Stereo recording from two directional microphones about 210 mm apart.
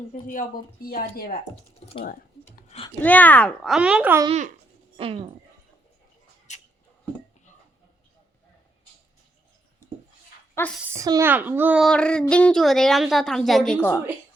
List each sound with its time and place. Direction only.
0.1 s speech: 40° left (ahead or behind)
2.6 s a sound: 30° left (ahead or behind)
3.0 s a woman's voice: 10° left (ahead or behind); by 4.3 s 10° right (ahead or behind)
4.3 s speech: 35° right (ahead or behind)
6.5 s a sound: 35° left (ahead or behind)
10.6 s speech: 10° left (ahead or behind)
10.9 s a child's voice: 15° right (ahead or behind); by 14.0 s 10° left (ahead or behind)